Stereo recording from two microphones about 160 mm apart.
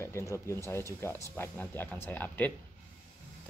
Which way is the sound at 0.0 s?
20° left (ahead or behind).